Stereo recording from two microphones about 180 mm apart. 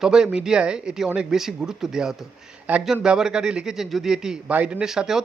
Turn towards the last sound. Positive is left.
turn(degrees=0)  # may be behind; listen again after turning